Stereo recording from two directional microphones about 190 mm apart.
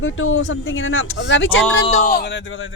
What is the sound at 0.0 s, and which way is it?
Speech, 90° left.